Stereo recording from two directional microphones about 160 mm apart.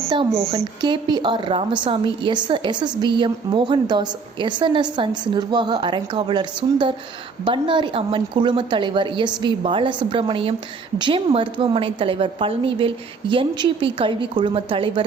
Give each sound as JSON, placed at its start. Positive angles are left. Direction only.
{"t": 0.1, "sound": "a woman's voice", "side_deg": -30}